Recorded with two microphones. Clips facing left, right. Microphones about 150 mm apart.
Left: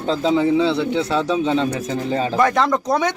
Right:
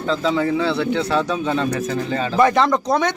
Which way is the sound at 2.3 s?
Centre (ahead or behind).